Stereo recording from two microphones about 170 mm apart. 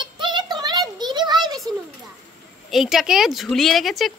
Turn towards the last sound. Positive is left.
turn(degrees=0)  # may be behind; listen again after turning